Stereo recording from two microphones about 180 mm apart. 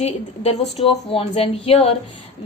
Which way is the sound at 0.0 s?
35° left (ahead or behind).